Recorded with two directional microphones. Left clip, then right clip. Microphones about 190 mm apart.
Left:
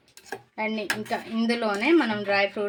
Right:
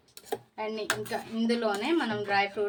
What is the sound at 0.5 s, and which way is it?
Speech, 45° left (ahead or behind).